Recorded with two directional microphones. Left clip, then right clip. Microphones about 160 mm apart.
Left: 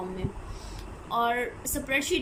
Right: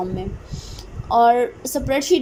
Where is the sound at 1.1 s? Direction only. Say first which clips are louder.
Right 12 dB; 35° right (ahead or behind).